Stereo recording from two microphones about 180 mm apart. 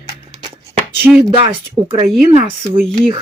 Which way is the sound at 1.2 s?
30° right (ahead or behind).